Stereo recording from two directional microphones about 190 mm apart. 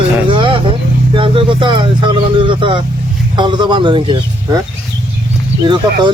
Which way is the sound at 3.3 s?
25° right (ahead or behind).